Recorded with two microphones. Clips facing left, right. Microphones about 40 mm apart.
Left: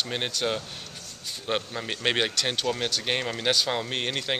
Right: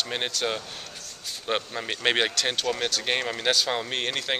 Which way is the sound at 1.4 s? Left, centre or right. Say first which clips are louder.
Right 1 dB; centre.